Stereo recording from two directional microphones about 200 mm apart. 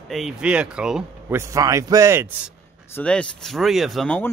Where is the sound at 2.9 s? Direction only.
5° left (ahead or behind).